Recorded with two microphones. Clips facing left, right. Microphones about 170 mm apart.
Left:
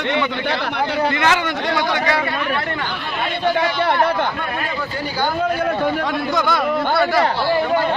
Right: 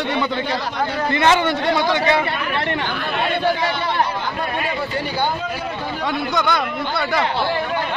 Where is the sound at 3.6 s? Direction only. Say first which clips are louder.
Left 3 dB; 60° left (ahead or behind).